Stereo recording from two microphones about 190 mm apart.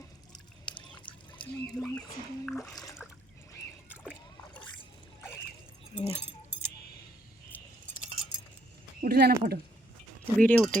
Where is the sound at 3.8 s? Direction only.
5° right (ahead or behind).